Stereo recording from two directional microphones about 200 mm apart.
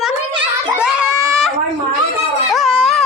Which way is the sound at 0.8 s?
5° right (ahead or behind).